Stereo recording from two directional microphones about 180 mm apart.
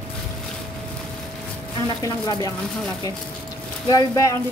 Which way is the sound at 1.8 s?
25° left (ahead or behind).